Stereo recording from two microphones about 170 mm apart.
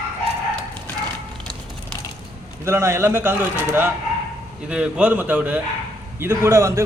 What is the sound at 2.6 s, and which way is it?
A man's voice, 15° right (ahead or behind).